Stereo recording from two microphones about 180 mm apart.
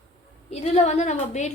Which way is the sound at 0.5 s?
35° left (ahead or behind).